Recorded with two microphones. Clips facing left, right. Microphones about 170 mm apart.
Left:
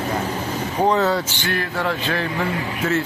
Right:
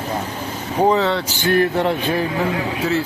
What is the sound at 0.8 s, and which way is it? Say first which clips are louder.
Speech: right 2 dB; centre (ahead or behind).